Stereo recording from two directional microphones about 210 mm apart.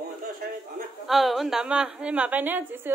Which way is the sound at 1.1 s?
Centre (ahead or behind).